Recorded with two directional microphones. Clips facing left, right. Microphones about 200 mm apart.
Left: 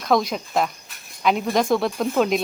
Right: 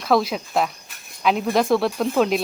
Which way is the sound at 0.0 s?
5° right (ahead or behind).